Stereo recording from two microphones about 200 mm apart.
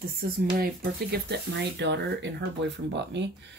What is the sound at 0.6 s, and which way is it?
Speech, 50° right (ahead or behind).